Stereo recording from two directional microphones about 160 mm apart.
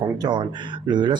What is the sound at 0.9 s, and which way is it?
Speech, 30° right (ahead or behind).